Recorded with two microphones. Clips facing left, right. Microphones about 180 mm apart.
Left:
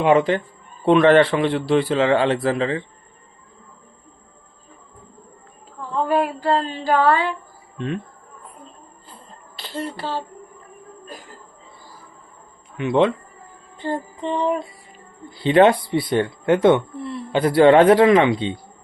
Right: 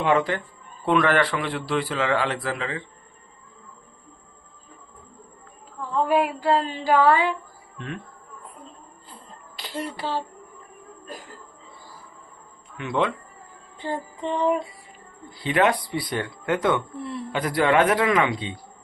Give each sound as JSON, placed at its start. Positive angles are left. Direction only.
{"t": 0.0, "sound": "a man's voice", "side_deg": 20}
{"t": 6.0, "sound": "a sound", "side_deg": -10}
{"t": 9.6, "sound": "speech", "side_deg": -10}
{"t": 12.7, "sound": "a man's voice", "side_deg": 20}
{"t": 13.7, "sound": "music", "side_deg": -5}
{"t": 15.3, "sound": "a man's voice", "side_deg": 30}